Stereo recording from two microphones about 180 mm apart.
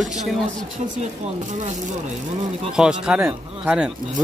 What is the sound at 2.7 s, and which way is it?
Speech, 5° right (ahead or behind).